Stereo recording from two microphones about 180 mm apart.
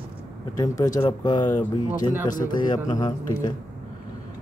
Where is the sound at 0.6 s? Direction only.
20° left (ahead or behind).